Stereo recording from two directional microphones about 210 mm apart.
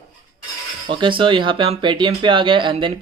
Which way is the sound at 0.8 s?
25° right (ahead or behind).